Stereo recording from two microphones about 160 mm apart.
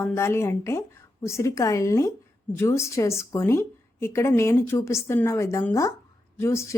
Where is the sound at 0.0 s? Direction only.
15° left (ahead or behind).